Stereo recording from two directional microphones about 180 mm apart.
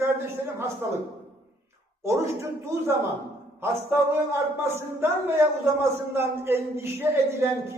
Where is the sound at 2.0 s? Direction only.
15° right (ahead or behind).